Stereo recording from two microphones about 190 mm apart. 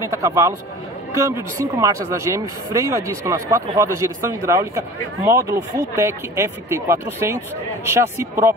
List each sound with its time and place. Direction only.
0.1 s speech: 15° right (ahead or behind)